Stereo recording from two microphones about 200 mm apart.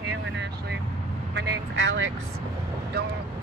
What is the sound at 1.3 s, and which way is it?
Vehicle, 55° right (ahead or behind).